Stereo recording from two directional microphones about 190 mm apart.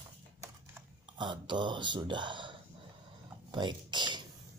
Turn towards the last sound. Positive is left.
turn(degrees=-25)  # may be behind; listen again after turning